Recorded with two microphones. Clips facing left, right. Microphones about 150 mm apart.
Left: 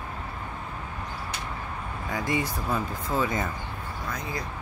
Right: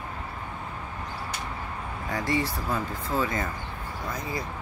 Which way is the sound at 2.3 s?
15° left (ahead or behind).